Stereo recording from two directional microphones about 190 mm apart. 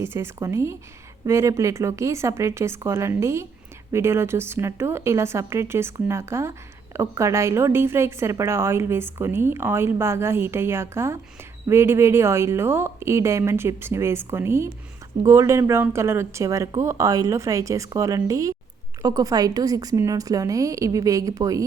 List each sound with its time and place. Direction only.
0.0 s speech: 15° right (ahead or behind)